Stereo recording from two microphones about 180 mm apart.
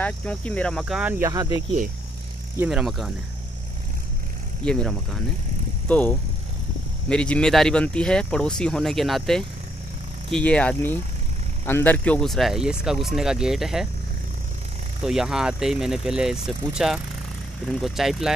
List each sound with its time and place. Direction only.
0.0 s speech: 5° left (ahead or behind)
1.3 s speech: 20° right (ahead or behind)
2.5 s speech: 5° right (ahead or behind)
4.6 s speech: 5° left (ahead or behind)
15.0 s speech: 5° right (ahead or behind)